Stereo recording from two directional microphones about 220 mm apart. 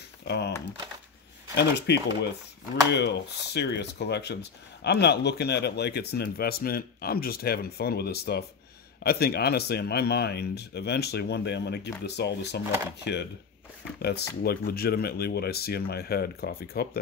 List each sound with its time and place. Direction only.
0.2 s speech: 50° left (ahead or behind)
1.5 s speech: 50° left (ahead or behind)